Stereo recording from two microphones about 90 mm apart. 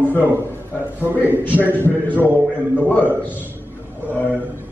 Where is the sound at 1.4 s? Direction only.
20° left (ahead or behind).